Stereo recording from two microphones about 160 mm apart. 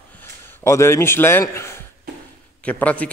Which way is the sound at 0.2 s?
15° left (ahead or behind).